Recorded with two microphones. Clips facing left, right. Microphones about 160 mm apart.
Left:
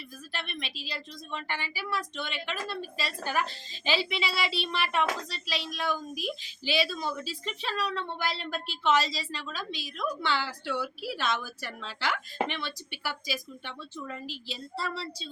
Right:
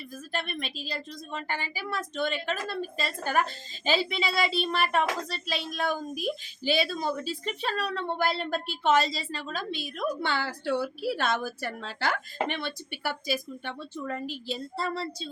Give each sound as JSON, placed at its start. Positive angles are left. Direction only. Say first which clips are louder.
{"t": 0.3, "sound": "a woman's voice", "louder": "right 5 dB", "side_deg": -45}